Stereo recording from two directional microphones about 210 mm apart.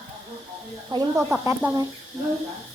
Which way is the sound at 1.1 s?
Centre (ahead or behind).